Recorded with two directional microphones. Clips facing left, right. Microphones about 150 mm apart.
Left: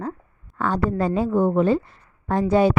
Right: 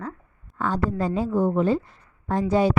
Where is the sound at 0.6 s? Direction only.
65° left (ahead or behind).